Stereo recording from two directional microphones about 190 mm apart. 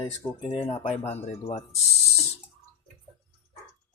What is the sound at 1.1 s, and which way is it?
Speech, 35° left (ahead or behind).